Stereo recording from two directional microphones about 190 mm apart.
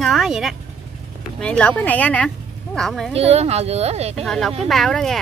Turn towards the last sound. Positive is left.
turn(degrees=0)  # may be behind; listen again after turning